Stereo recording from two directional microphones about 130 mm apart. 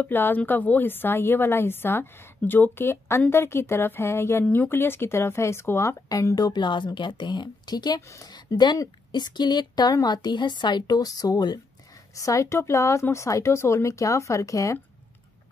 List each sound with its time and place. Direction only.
0.0 s a woman's voice: 15° left (ahead or behind)